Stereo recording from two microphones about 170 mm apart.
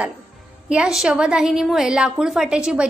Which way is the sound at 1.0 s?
5° right (ahead or behind).